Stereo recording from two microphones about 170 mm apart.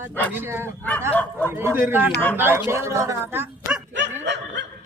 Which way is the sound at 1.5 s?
15° right (ahead or behind).